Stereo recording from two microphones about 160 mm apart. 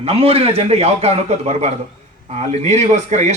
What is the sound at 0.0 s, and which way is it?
A man's voice, 40° right (ahead or behind).